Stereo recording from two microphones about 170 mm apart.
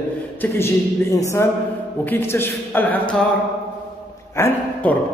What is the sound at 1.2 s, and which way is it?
A man's voice, 15° left (ahead or behind).